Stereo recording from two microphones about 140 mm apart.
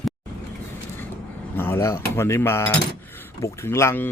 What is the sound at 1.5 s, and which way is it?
Speech, 15° left (ahead or behind).